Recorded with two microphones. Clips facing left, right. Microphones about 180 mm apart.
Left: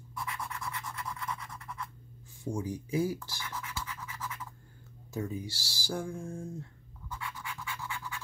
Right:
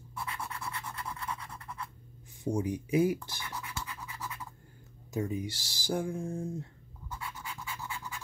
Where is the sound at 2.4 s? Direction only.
20° right (ahead or behind).